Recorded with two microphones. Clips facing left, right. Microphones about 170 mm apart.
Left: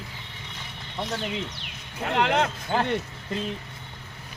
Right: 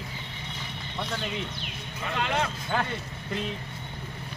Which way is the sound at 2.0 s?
70° left (ahead or behind).